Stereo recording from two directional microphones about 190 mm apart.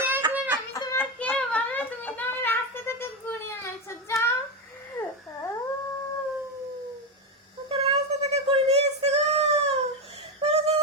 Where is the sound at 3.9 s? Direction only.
15° left (ahead or behind).